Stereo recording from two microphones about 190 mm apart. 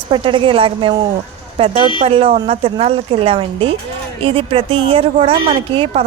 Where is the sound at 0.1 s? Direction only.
25° right (ahead or behind).